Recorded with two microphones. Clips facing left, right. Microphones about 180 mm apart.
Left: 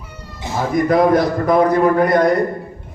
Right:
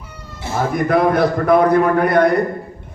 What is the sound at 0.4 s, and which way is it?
Cat, 15° left (ahead or behind).